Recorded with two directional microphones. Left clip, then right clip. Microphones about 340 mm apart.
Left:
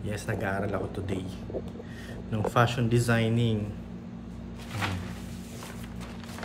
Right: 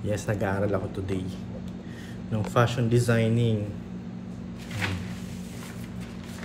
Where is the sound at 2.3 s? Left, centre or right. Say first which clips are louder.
Even; centre.